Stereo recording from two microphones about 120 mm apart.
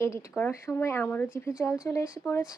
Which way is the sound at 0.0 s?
25° left (ahead or behind).